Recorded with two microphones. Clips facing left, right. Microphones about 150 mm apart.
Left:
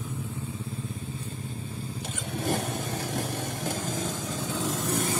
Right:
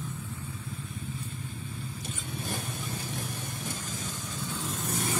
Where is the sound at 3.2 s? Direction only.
90° left.